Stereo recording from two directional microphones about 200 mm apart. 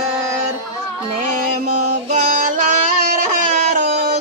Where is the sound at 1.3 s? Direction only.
35° right (ahead or behind).